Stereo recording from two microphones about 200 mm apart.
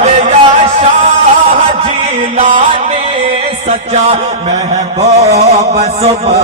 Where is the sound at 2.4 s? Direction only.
35° right (ahead or behind).